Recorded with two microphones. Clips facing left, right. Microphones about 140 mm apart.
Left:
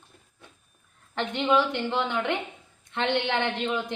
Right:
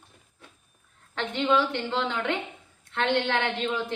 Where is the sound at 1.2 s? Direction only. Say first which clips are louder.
Left 1 dB; 15° left (ahead or behind).